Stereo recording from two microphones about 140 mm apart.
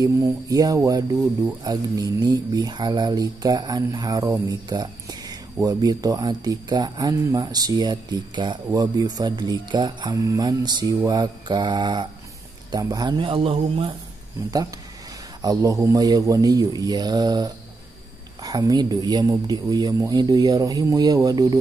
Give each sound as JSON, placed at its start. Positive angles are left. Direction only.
{"t": 0.0, "sound": "a man's voice", "side_deg": -25}
{"t": 15.4, "sound": "speech", "side_deg": -20}